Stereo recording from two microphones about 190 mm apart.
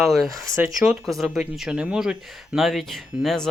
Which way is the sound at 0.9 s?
Centre (ahead or behind).